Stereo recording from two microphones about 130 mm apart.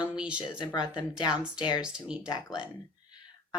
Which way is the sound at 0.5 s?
35° left (ahead or behind).